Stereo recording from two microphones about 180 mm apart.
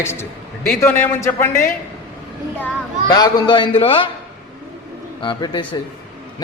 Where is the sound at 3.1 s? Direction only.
20° left (ahead or behind).